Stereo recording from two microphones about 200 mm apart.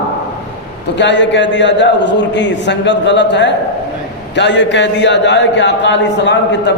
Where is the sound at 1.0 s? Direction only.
60° left (ahead or behind).